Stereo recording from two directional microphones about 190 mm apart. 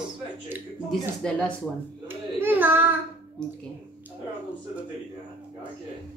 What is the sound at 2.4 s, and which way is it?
Speech, 10° right (ahead or behind).